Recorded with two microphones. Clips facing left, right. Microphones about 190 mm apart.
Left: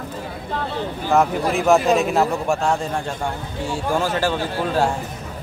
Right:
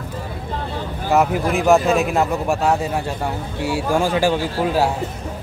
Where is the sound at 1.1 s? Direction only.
Centre (ahead or behind).